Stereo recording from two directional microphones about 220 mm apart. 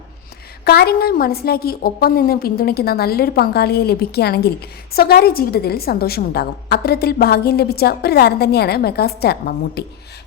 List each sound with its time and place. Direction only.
0.6 s a woman's voice: 45° left (ahead or behind)